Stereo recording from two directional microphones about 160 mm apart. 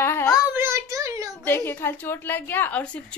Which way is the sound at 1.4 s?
15° left (ahead or behind).